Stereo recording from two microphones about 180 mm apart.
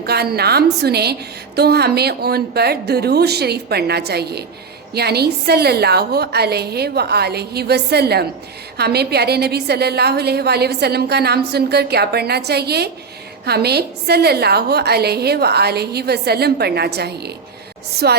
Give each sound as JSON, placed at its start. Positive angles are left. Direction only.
{"t": 0.0, "sound": "a woman's voice", "side_deg": -60}